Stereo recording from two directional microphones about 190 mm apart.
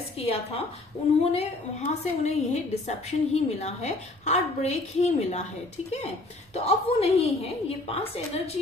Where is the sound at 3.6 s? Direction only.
35° left (ahead or behind).